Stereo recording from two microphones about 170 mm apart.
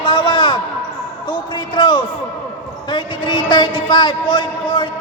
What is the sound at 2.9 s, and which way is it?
A man's voice, 30° left (ahead or behind).